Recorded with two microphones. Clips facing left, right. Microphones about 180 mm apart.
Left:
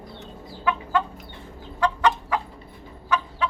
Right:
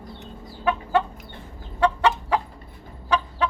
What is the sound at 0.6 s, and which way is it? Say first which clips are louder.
Chicken: right 2 dB; 25° right (ahead or behind).